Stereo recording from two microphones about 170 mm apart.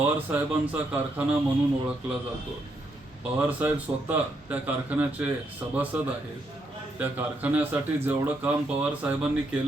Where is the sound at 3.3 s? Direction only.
10° right (ahead or behind).